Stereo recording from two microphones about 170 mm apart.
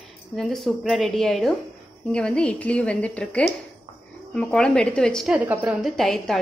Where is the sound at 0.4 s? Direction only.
Centre (ahead or behind).